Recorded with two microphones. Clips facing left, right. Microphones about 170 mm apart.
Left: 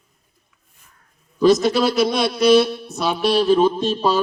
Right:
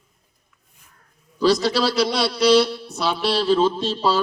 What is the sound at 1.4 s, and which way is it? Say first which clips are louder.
A man's voice: left 4 dB; 20° left (ahead or behind).